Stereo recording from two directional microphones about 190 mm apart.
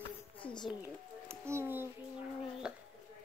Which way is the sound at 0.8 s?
15° right (ahead or behind).